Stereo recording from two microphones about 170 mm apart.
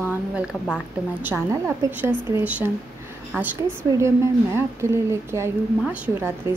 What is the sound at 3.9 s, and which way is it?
A woman's voice, 15° right (ahead or behind).